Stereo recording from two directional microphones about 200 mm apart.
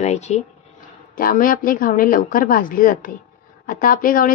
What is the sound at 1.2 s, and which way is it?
A woman's voice, 45° left (ahead or behind).